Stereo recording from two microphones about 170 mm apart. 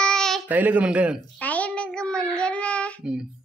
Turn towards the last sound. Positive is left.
turn(degrees=-5)  # may be behind; listen again after turning